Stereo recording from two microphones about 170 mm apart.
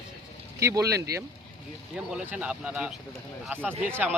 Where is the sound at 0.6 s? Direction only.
20° right (ahead or behind).